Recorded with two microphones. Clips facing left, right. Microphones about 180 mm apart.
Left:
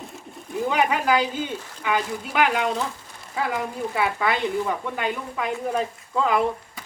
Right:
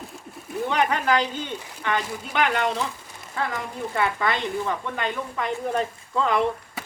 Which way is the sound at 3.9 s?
5° left (ahead or behind).